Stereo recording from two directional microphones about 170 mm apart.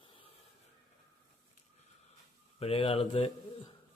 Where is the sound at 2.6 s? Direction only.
35° left (ahead or behind).